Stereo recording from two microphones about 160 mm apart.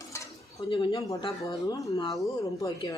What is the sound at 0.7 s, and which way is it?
Speech, 30° left (ahead or behind).